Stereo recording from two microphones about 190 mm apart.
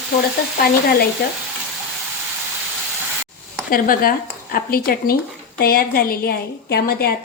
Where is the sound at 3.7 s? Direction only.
50° left (ahead or behind).